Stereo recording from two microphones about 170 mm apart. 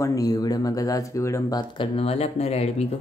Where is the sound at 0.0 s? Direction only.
20° left (ahead or behind).